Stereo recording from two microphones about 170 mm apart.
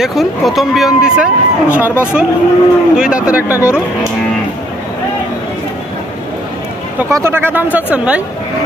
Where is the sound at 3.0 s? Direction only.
5° right (ahead or behind).